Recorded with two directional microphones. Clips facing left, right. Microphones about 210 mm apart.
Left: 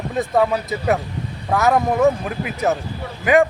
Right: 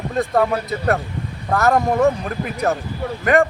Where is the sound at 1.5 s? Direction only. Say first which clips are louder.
Even; centre (ahead or behind).